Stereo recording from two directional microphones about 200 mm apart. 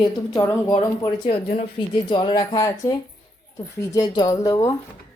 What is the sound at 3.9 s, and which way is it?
Speech, 20° left (ahead or behind).